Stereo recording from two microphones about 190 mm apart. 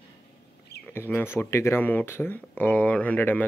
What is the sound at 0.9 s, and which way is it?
Speech, 10° left (ahead or behind).